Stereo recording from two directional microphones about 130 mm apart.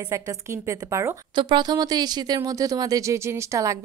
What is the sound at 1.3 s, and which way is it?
Speech, 35° right (ahead or behind).